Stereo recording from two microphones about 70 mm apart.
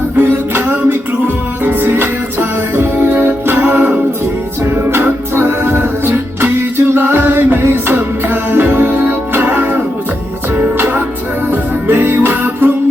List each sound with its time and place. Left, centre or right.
0.2 s music: right